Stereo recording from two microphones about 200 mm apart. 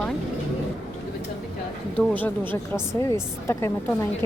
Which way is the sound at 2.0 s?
10° left (ahead or behind).